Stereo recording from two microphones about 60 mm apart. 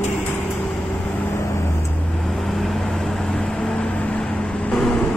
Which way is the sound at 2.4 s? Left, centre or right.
Centre.